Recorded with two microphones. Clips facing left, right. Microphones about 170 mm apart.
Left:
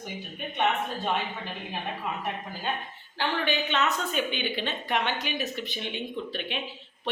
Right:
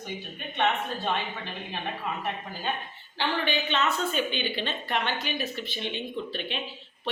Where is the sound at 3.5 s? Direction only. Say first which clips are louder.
Left 1 dB; 5° left (ahead or behind).